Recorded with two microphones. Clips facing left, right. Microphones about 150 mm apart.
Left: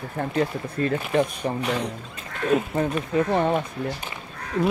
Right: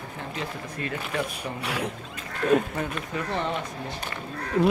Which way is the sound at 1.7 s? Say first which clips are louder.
Left 4 dB; 5° right (ahead or behind).